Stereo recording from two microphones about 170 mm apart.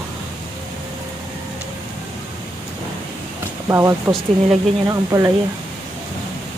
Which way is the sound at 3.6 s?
15° right (ahead or behind).